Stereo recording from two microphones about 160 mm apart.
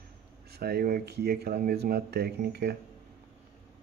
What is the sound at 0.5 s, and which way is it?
Speech, 80° right.